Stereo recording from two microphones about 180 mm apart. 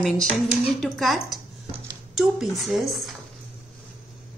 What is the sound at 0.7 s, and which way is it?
Speech, centre (ahead or behind).